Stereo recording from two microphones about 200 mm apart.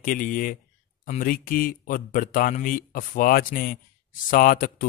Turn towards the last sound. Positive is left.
turn(degrees=45)  # may be behind; listen again after turning